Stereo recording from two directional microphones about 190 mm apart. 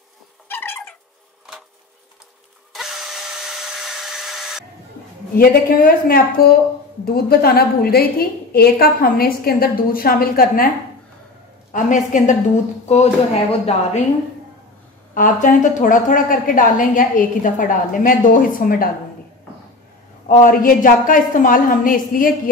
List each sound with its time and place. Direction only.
0.5 s cat: 10° left (ahead or behind)
2.7 s tools: centre (ahead or behind)
5.4 s a woman's voice: 50° left (ahead or behind)
11.7 s a woman's voice: 40° left (ahead or behind)
15.1 s a woman's voice: 45° left (ahead or behind)
20.2 s a woman's voice: 45° left (ahead or behind)